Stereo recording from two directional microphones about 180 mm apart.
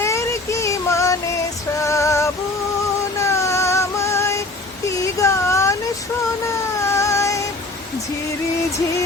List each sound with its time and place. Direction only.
0.0 s child singing: 15° left (ahead or behind)
1.8 s music: 15° left (ahead or behind)
3.2 s child singing: 15° left (ahead or behind)
4.9 s a sound: 15° left (ahead or behind)
6.8 s music: 15° left (ahead or behind)